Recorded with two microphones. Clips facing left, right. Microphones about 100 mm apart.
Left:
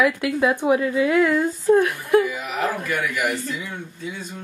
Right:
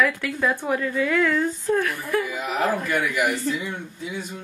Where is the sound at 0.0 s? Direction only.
15° left (ahead or behind).